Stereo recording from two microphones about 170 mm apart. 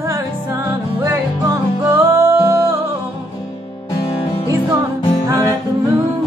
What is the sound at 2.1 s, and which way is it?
Music, 15° right (ahead or behind).